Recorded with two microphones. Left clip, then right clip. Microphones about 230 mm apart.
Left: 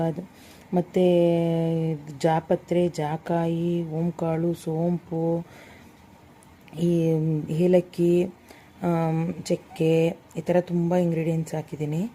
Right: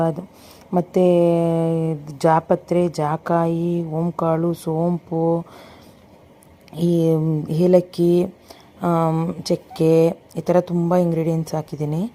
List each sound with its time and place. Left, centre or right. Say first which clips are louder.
0.7 s a woman's voice: right 5 dB; centre
6.7 s speech: right 4 dB; centre
7.0 s a woman's voice: right 5 dB; centre